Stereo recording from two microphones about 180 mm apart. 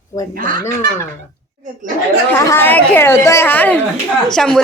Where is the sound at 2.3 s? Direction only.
15° left (ahead or behind).